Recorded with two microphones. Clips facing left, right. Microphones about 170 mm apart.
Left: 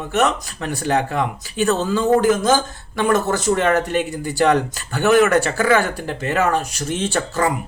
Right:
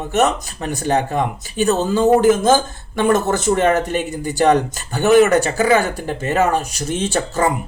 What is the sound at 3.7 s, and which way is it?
Speech, 45° right (ahead or behind).